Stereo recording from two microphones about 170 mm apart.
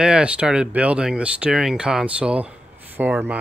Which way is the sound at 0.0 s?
5° right (ahead or behind).